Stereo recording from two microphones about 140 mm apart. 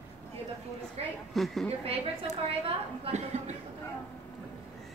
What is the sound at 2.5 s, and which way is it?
Speech, 45° right (ahead or behind).